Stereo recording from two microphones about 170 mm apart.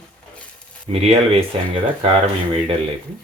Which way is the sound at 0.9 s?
35° right (ahead or behind).